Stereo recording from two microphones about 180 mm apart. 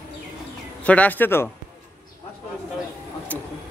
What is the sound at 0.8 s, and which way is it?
Speech, 10° left (ahead or behind).